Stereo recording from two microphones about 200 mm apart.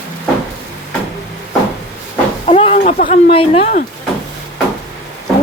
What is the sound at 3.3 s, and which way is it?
Speech, 30° left (ahead or behind).